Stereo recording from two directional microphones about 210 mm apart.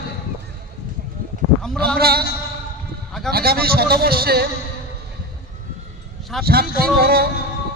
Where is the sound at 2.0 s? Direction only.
45° right (ahead or behind).